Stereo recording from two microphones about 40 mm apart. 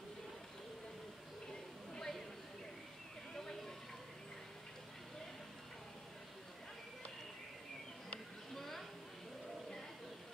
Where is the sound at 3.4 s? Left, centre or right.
Centre.